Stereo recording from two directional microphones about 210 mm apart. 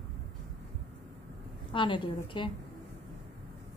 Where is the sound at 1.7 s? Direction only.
25° left (ahead or behind).